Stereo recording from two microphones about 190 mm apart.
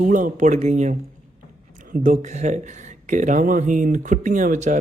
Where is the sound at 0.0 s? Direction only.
40° right (ahead or behind).